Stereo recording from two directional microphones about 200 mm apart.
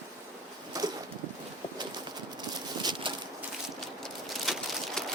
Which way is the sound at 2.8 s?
20° right (ahead or behind).